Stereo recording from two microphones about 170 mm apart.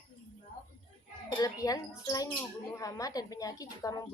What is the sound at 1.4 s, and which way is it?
A woman's voice, 20° left (ahead or behind).